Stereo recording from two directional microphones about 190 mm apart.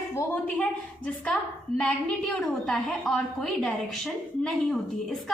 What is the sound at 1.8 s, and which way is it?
A woman's voice, 5° left (ahead or behind).